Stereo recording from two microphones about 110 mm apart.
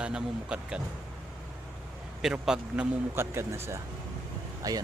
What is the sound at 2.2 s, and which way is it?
Speech, 5° right (ahead or behind).